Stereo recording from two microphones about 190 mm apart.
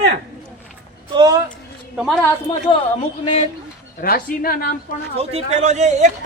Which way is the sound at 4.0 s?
50° left (ahead or behind).